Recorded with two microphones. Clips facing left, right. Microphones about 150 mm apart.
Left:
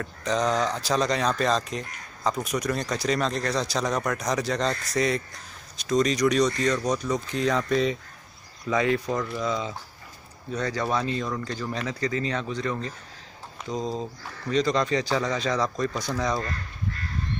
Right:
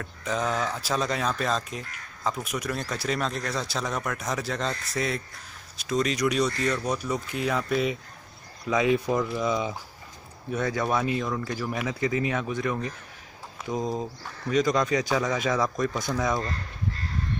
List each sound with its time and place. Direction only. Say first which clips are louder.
0.0 s speech: left 3 dB; 5° right (ahead or behind)
10.8 s speech: even; 10° right (ahead or behind)
13.7 s speech: right 1 dB; 10° right (ahead or behind)
16.3 s crow: even; 25° right (ahead or behind)